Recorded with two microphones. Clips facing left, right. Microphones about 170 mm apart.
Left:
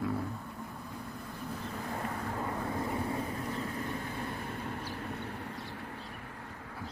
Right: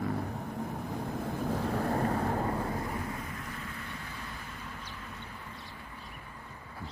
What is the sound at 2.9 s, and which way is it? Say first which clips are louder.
Vehicle: left 4 dB; 30° left (ahead or behind).